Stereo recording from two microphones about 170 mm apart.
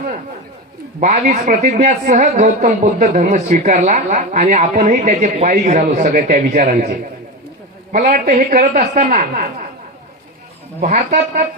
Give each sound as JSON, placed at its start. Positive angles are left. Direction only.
{"t": 0.9, "sound": "a woman's voice", "side_deg": -50}
{"t": 7.9, "sound": "a woman's voice", "side_deg": -50}
{"t": 10.8, "sound": "a woman's voice", "side_deg": -45}